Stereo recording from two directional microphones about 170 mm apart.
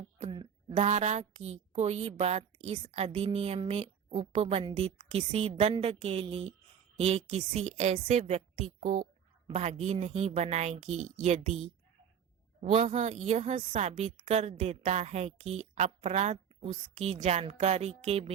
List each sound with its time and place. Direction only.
0.8 s a woman's voice: 45° right (ahead or behind)
9.5 s a woman's voice: 40° right (ahead or behind)
12.6 s a woman's voice: 40° right (ahead or behind)